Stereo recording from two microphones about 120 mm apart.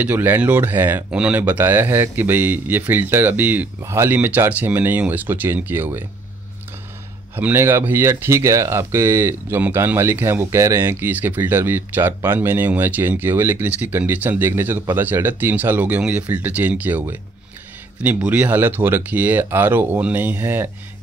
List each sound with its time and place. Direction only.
0.0 s speech: 15° right (ahead or behind)
7.3 s speech: 15° right (ahead or behind)